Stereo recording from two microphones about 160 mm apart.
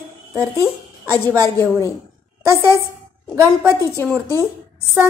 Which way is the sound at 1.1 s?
15° left (ahead or behind).